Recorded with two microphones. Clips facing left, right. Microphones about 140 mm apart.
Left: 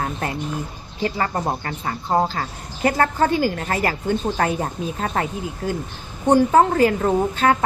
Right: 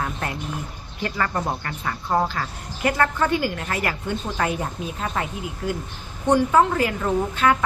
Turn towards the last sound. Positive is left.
turn(degrees=35)  # may be behind; listen again after turning